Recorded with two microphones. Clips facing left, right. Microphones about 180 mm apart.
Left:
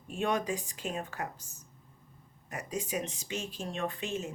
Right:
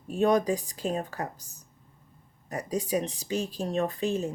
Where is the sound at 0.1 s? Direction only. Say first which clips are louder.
Right 8 dB; 40° right (ahead or behind).